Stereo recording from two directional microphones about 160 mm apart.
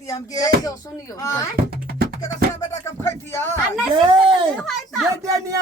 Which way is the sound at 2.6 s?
15° left (ahead or behind).